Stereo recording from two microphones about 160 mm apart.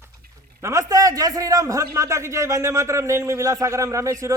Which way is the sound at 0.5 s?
15° right (ahead or behind).